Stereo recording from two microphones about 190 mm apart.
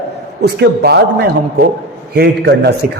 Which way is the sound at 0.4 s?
60° right (ahead or behind).